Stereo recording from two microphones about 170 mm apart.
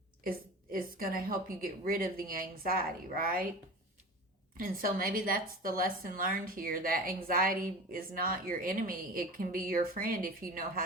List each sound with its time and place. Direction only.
0.3 s a woman's voice: 55° right (ahead or behind)
4.5 s a woman's voice: 55° right (ahead or behind)